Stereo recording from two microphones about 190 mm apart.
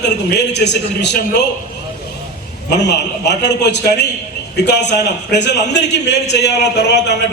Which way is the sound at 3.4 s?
60° left (ahead or behind).